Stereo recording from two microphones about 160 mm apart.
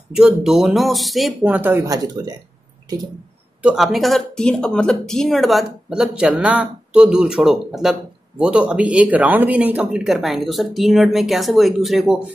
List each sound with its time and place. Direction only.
0.1 s speech: 5° right (ahead or behind)
1.4 s speech: 10° right (ahead or behind)
1.7 s speech: 20° right (ahead or behind)
3.6 s speech: centre (ahead or behind)